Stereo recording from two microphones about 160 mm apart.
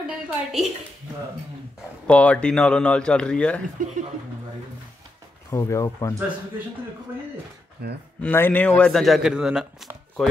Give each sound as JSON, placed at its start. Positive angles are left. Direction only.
{"t": 0.0, "sound": "a sound", "side_deg": 0}
{"t": 2.0, "sound": "speech", "side_deg": 5}
{"t": 5.5, "sound": "speech", "side_deg": 20}
{"t": 7.8, "sound": "speech", "side_deg": -90}
{"t": 8.2, "sound": "speech", "side_deg": 10}